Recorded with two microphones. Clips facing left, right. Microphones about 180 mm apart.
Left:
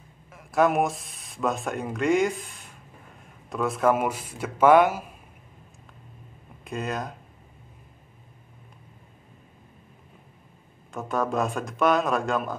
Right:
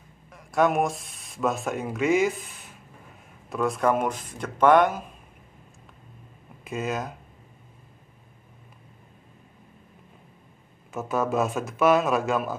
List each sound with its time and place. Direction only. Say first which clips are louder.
0.3 s speech: left 1 dB; centre (ahead or behind)
3.4 s speech: left 1 dB; centre (ahead or behind)
6.6 s a man's voice: right 1 dB; centre (ahead or behind)
10.9 s a man's voice: right 1 dB; 5° right (ahead or behind)